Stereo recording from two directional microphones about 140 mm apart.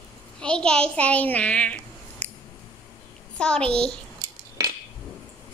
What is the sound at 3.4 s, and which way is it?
Child singing, 5° left (ahead or behind).